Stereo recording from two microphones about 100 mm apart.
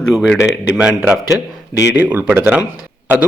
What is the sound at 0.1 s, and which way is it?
A man's voice, centre (ahead or behind).